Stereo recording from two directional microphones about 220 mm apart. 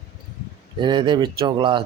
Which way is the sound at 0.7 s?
20° right (ahead or behind).